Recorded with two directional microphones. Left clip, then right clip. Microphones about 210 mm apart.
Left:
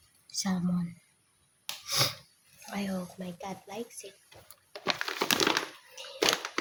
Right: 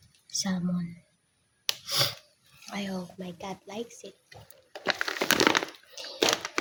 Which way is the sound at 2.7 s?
10° right (ahead or behind).